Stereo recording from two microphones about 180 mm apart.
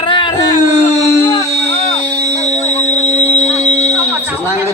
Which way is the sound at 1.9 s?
35° left (ahead or behind).